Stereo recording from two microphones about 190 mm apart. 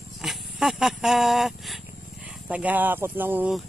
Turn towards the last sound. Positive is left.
turn(degrees=-10)  # may be behind; listen again after turning